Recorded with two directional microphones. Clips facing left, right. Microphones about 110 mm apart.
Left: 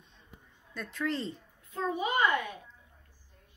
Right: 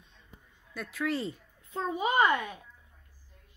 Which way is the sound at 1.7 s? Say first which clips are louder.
Right 1 dB; 30° right (ahead or behind).